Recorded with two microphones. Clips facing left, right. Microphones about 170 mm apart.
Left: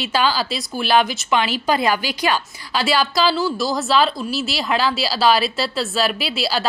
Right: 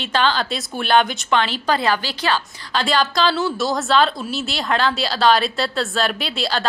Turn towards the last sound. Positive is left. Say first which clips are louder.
# left 1 dB
turn(degrees=5)  # may be behind; listen again after turning